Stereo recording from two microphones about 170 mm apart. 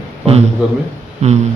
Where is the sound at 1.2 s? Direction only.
40° right (ahead or behind).